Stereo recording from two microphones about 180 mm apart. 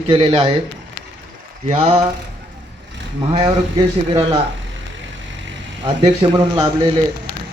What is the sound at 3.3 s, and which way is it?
Speech, 20° right (ahead or behind).